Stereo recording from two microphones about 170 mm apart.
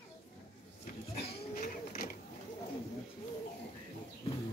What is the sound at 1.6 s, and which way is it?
Mechanisms, 60° left (ahead or behind).